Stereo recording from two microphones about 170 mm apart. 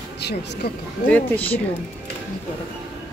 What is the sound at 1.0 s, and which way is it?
Speech, 10° left (ahead or behind).